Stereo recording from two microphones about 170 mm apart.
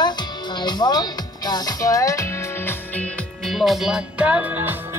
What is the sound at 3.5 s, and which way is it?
Speech, centre (ahead or behind).